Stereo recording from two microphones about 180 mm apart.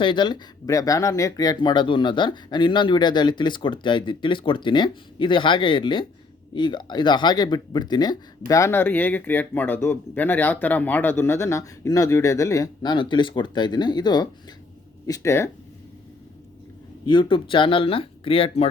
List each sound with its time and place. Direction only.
0.0 s speech: 25° left (ahead or behind)
17.1 s speech: 25° left (ahead or behind)